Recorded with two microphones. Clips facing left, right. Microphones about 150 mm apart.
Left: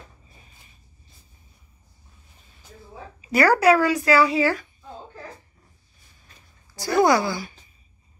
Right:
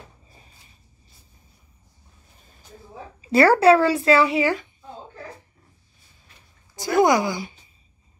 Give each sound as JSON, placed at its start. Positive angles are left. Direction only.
{"t": 3.2, "sound": "speech", "side_deg": -30}
{"t": 6.7, "sound": "speech", "side_deg": -20}